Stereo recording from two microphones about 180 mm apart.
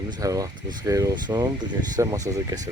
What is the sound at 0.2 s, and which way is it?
Speech, 20° right (ahead or behind).